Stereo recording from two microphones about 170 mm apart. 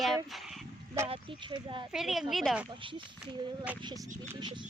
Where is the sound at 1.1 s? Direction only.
35° right (ahead or behind).